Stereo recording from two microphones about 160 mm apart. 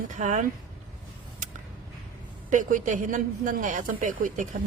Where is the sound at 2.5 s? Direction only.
55° right (ahead or behind).